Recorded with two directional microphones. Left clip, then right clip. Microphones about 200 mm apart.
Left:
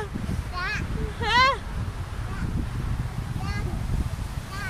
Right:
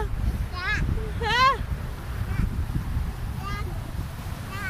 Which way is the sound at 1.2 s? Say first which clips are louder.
Even; 25° left (ahead or behind).